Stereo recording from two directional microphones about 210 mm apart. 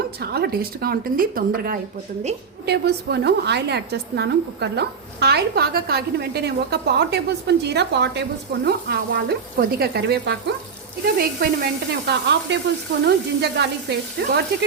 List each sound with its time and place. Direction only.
0.2 s a woman's voice: 50° right (ahead or behind)